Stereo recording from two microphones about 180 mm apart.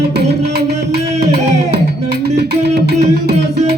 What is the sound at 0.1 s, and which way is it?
Music, 65° right (ahead or behind).